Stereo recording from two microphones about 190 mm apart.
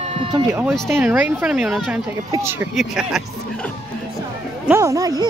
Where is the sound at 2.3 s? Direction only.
15° right (ahead or behind).